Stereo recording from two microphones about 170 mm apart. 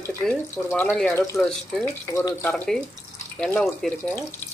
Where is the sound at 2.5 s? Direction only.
5° left (ahead or behind).